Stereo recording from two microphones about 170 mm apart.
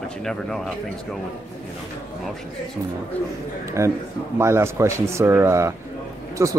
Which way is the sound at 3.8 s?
15° right (ahead or behind).